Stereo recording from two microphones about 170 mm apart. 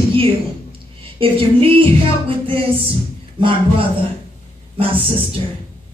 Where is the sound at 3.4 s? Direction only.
30° right (ahead or behind).